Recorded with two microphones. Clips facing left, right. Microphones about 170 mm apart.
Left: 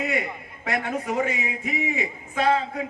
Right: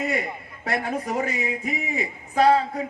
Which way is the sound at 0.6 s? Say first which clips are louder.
Right 1 dB; 40° right (ahead or behind).